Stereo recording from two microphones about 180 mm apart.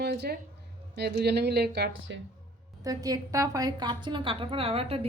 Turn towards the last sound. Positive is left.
turn(degrees=-35)  # may be behind; listen again after turning